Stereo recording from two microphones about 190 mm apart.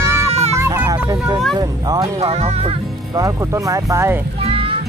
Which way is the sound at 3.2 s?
15° right (ahead or behind).